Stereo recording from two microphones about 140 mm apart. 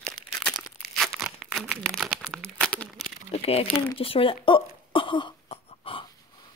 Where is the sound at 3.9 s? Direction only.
40° left (ahead or behind).